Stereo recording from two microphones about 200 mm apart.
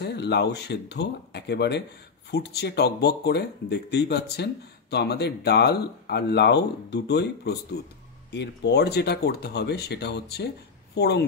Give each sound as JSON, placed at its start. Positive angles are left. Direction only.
{"t": 0.0, "sound": "speech", "side_deg": 55}